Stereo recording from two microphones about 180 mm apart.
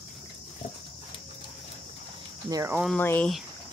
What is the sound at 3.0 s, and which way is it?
Speech, 10° left (ahead or behind).